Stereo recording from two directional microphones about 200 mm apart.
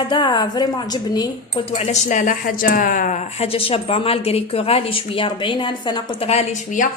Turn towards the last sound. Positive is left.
turn(degrees=40)  # may be behind; listen again after turning